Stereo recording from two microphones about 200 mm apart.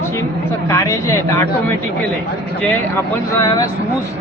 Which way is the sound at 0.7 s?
15° left (ahead or behind).